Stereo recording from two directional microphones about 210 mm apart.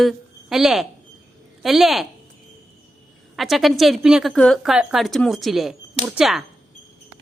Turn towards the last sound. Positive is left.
turn(degrees=0)  # may be behind; listen again after turning